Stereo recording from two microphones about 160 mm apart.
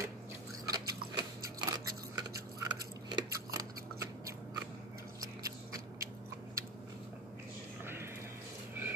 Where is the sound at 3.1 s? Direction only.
20° right (ahead or behind).